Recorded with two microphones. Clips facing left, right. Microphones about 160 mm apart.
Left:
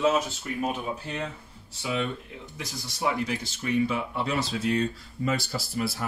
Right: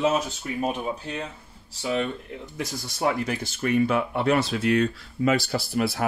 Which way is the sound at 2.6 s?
50° right (ahead or behind).